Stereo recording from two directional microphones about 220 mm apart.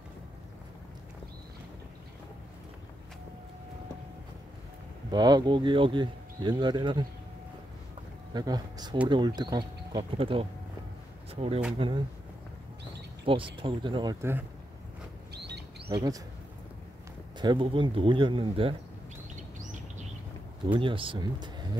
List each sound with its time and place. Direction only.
5.1 s speech: 20° right (ahead or behind)
8.3 s speech: 20° right (ahead or behind)
13.2 s speech: 25° right (ahead or behind)
15.3 s bird: 50° right (ahead or behind)
15.9 s speech: 15° right (ahead or behind)
17.4 s speech: 20° right (ahead or behind)
20.6 s speech: 20° right (ahead or behind)